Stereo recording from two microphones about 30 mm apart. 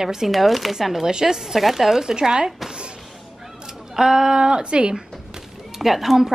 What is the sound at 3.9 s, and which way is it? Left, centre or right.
Speech, centre.